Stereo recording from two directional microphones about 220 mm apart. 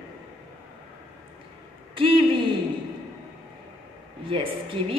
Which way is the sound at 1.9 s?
25° right (ahead or behind).